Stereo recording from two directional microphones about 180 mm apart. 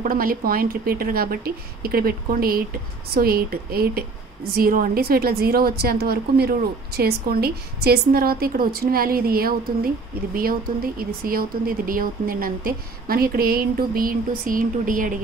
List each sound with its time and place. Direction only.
0.0 s a woman's voice: 50° right (ahead or behind)
11.0 s speech: 55° right (ahead or behind)